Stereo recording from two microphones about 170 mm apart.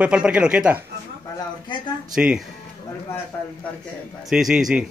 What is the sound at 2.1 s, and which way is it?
Speech, 5° right (ahead or behind).